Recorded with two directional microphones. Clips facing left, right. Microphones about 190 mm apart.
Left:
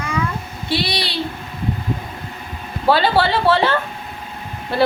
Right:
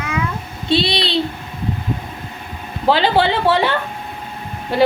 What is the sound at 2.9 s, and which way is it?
Speech, 15° right (ahead or behind).